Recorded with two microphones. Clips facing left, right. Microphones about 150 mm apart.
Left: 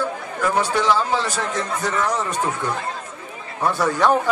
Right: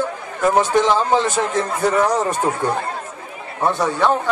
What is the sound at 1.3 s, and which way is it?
Speech, 30° right (ahead or behind).